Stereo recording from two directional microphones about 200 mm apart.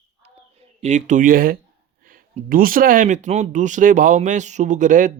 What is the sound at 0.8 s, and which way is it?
Speech, 35° right (ahead or behind).